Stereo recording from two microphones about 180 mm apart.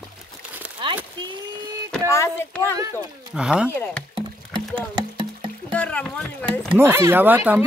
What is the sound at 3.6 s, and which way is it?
Speech, 10° left (ahead or behind).